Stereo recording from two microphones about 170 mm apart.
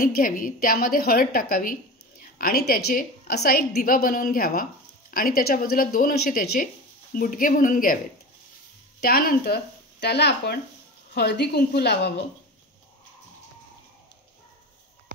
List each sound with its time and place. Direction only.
0.0 s a woman's voice: 55° left (ahead or behind)
9.0 s a woman's voice: 65° left (ahead or behind); by 12.1 s 80° left